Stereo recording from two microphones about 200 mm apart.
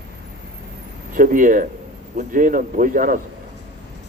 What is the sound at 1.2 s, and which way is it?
Speech, 40° right (ahead or behind).